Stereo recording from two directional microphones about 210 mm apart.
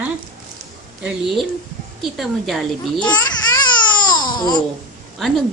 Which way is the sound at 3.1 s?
20° left (ahead or behind).